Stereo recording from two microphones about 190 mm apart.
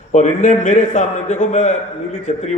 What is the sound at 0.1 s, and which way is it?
A man's voice, 40° left (ahead or behind).